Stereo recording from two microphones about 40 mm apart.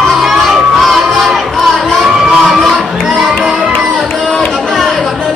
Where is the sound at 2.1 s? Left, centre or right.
Centre.